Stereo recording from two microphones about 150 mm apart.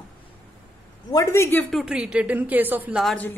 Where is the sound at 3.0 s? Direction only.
Centre (ahead or behind).